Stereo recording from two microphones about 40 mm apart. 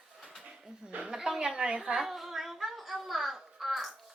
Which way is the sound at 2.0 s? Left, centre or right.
Centre.